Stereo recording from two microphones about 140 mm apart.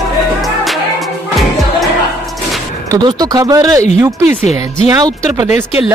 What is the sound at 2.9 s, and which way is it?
Speech, 30° right (ahead or behind).